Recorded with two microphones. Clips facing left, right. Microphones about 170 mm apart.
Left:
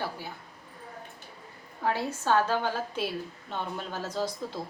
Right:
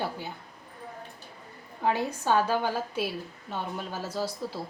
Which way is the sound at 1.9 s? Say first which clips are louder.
Right 1 dB; 15° right (ahead or behind).